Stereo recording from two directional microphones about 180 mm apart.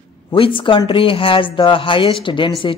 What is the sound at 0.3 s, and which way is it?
A woman's voice, 30° left (ahead or behind).